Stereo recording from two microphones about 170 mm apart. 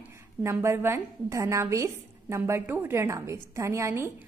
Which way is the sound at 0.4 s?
15° right (ahead or behind).